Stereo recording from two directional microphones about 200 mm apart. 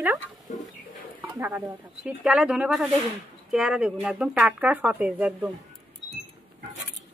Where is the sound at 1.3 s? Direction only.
10° right (ahead or behind).